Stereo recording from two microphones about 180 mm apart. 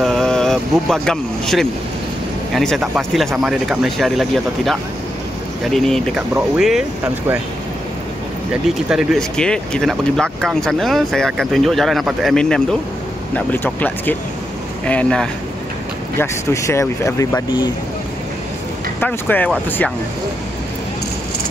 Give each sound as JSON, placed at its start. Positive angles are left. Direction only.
{"t": 0.0, "sound": "speech", "side_deg": 5}
{"t": 8.6, "sound": "speech", "side_deg": 0}
{"t": 18.9, "sound": "speech", "side_deg": 10}